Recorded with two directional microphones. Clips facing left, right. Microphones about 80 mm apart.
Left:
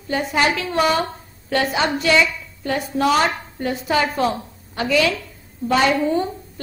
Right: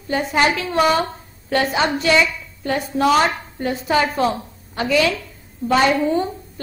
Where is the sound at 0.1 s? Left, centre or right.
Right.